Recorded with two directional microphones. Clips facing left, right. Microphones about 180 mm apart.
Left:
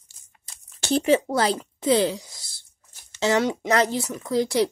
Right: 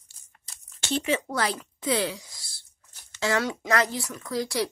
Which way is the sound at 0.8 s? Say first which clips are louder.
Left 7 dB; 35° left (ahead or behind).